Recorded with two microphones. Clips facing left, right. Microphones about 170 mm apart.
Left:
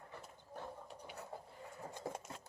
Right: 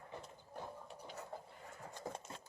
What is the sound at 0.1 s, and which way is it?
Horse, 20° right (ahead or behind).